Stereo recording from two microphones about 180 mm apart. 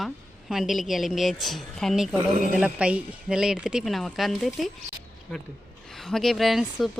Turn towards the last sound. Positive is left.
turn(degrees=0)  # may be behind; listen again after turning